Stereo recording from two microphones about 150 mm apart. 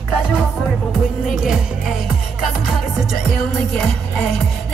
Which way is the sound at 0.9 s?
5° right (ahead or behind).